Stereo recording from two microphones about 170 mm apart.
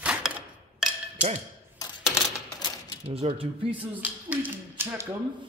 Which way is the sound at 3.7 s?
10° right (ahead or behind).